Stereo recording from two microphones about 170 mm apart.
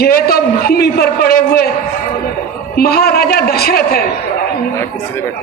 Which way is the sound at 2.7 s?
65° left (ahead or behind).